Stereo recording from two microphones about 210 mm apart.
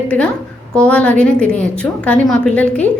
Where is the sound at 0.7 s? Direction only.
5° left (ahead or behind).